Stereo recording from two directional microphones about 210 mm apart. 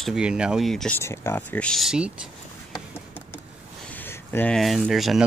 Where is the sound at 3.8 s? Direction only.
10° left (ahead or behind).